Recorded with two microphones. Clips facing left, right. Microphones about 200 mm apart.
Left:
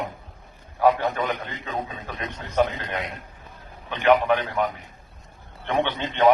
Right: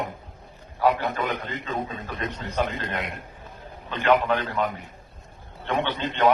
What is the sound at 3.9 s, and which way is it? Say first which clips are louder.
A man's voice: left 2 dB; 15° left (ahead or behind).